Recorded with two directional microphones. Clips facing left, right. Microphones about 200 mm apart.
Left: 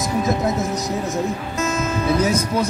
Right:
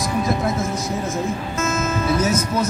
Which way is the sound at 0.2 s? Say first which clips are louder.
Left 2 dB; 20° left (ahead or behind).